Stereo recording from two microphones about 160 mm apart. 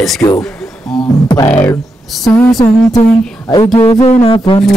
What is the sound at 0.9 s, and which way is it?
Speech, 20° left (ahead or behind).